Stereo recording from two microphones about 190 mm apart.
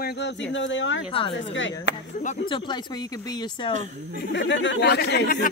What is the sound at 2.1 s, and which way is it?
Speech, 40° left (ahead or behind).